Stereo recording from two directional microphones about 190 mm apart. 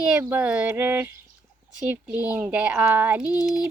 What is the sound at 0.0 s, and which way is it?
Speech, 5° right (ahead or behind).